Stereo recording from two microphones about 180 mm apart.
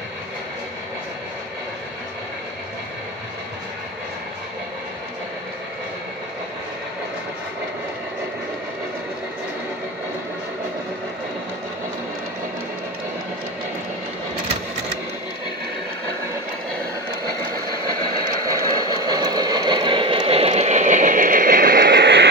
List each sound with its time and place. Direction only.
18.7 s vehicle: 20° right (ahead or behind); by 22.3 s 70° right (ahead or behind)